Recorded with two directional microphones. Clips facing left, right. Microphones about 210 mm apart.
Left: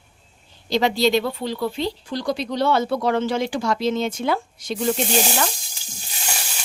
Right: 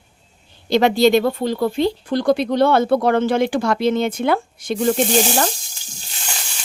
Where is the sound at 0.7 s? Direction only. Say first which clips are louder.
Right 5 dB; 55° right (ahead or behind).